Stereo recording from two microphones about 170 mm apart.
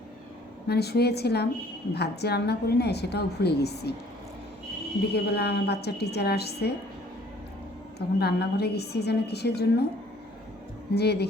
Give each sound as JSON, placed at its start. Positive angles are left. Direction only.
{"t": 0.7, "sound": "a woman's voice", "side_deg": 70}
{"t": 5.1, "sound": "a woman's voice", "side_deg": 75}
{"t": 7.9, "sound": "a woman's voice", "side_deg": 70}
{"t": 10.9, "sound": "a woman's voice", "side_deg": 75}